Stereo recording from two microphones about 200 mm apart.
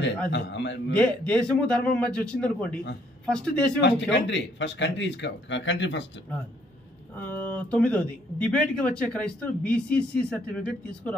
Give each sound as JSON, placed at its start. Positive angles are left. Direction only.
{"t": 0.3, "sound": "speech", "side_deg": 65}
{"t": 0.9, "sound": "speech", "side_deg": 5}
{"t": 3.8, "sound": "speech", "side_deg": 65}
{"t": 7.2, "sound": "speech", "side_deg": 10}